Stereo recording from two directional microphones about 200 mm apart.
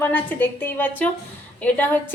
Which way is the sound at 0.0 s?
10° left (ahead or behind).